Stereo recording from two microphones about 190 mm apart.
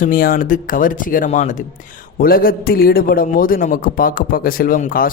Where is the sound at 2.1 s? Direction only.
50° left (ahead or behind).